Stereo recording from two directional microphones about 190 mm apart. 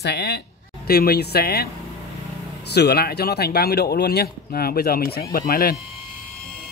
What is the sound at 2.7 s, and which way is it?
Speech, 60° left (ahead or behind).